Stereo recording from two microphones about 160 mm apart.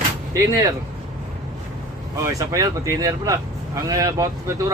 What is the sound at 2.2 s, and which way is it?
Speech, 20° right (ahead or behind).